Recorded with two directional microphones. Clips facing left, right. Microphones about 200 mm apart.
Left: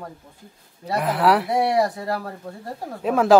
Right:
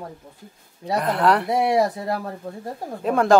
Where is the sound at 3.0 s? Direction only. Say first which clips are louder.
Left 1 dB; centre (ahead or behind).